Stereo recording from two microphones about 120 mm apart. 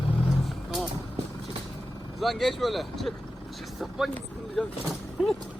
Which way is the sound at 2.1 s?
Centre (ahead or behind).